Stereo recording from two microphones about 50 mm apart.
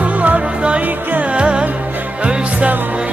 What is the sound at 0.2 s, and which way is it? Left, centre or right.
Music, right.